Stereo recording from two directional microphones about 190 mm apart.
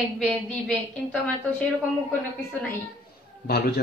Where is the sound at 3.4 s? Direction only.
55° left (ahead or behind).